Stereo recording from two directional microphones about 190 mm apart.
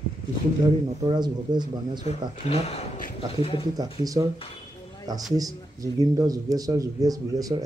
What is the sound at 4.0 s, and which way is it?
Speech, 20° right (ahead or behind).